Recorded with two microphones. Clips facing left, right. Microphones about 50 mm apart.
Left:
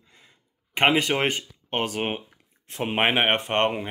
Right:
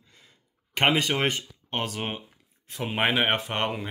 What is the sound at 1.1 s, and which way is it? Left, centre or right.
Speech, left.